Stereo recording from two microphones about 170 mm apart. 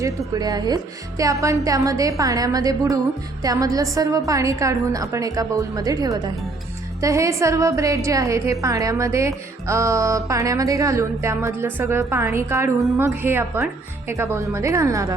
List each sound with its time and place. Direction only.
0.0 s a woman's voice: 20° right (ahead or behind)